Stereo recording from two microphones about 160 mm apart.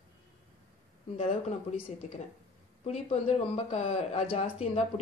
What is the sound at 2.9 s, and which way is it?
Speech, 40° left (ahead or behind).